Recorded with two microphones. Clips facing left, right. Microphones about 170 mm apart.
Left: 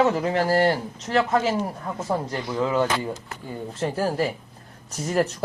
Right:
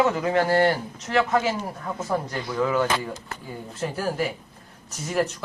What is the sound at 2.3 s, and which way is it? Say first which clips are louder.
Speech: even; 25° left (ahead or behind).